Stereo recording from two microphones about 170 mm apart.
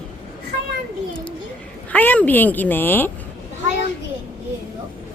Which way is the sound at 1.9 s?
10° left (ahead or behind).